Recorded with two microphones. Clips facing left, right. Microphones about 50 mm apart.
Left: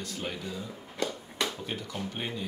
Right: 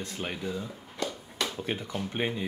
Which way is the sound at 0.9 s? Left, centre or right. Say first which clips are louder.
Left 1 dB; centre.